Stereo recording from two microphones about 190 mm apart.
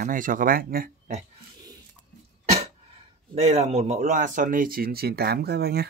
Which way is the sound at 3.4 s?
35° right (ahead or behind).